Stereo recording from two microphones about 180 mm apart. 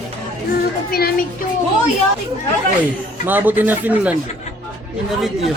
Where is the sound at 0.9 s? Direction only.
55° left (ahead or behind).